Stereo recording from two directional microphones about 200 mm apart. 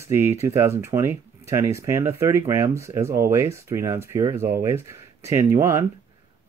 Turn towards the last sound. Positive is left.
turn(degrees=-15)  # may be behind; listen again after turning